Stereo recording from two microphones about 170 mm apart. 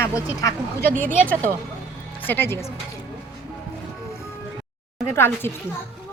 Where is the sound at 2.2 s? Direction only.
10° left (ahead or behind).